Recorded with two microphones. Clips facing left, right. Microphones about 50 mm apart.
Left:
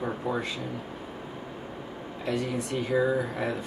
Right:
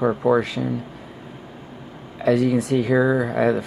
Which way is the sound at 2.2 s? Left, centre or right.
Right.